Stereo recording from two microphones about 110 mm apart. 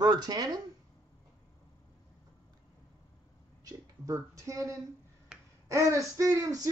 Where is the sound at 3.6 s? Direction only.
30° right (ahead or behind).